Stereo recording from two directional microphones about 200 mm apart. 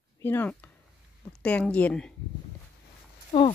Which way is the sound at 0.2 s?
10° left (ahead or behind).